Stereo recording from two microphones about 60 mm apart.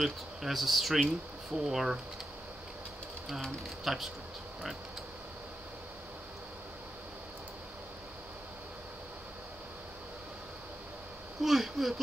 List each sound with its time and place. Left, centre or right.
0.0 s speech: centre
3.3 s speech: centre
11.4 s speech: centre